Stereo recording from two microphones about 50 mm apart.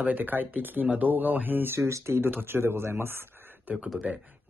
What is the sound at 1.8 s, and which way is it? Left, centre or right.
Speech, right.